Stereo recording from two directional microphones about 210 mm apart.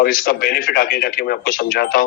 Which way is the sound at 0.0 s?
45° left (ahead or behind).